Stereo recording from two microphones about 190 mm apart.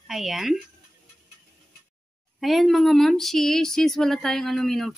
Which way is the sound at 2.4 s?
Centre (ahead or behind).